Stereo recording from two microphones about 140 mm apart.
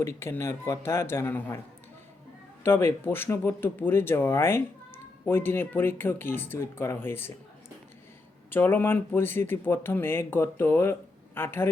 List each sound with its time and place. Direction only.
0.0 s speech: 20° left (ahead or behind)
2.6 s speech: 15° left (ahead or behind)
8.4 s speech: 15° left (ahead or behind)